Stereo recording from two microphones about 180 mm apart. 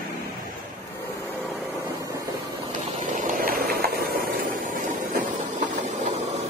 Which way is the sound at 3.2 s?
45° right (ahead or behind).